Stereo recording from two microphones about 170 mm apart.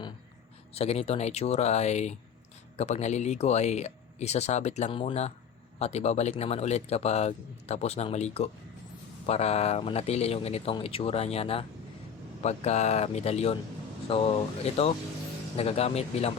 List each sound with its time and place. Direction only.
0.7 s speech: 35° left (ahead or behind)